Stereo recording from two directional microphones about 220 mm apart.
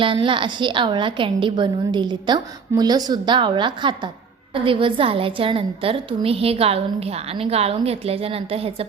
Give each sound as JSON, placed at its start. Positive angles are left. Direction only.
{"t": 0.0, "sound": "a woman's voice", "side_deg": -20}